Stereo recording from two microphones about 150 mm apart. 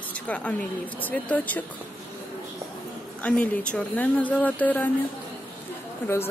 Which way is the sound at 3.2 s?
10° left (ahead or behind).